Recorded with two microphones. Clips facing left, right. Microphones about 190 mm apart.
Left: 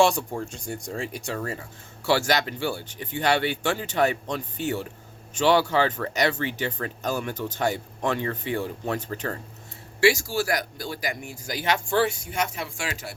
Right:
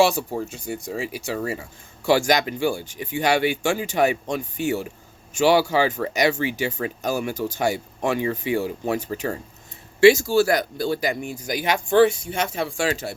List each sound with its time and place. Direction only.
0.0 s speech: 5° right (ahead or behind)
10.0 s speech: 20° right (ahead or behind)